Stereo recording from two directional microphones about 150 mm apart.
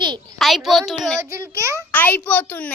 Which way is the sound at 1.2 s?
20° right (ahead or behind).